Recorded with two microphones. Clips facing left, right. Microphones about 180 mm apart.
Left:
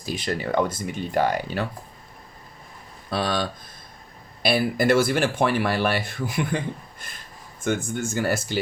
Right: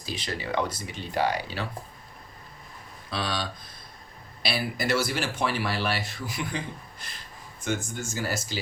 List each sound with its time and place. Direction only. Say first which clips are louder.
0.0 s speech: left 6 dB; 50° left (ahead or behind)
3.1 s speech: left 6 dB; 50° left (ahead or behind)
4.4 s speech: left 8 dB; 50° left (ahead or behind)